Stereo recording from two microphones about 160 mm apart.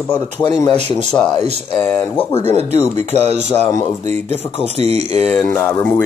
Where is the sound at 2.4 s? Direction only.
45° right (ahead or behind).